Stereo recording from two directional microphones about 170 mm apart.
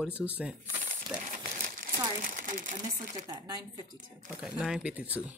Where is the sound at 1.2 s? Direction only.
50° right (ahead or behind).